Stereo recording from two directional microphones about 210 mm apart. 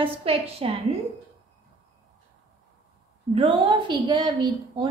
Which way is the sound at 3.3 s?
25° right (ahead or behind).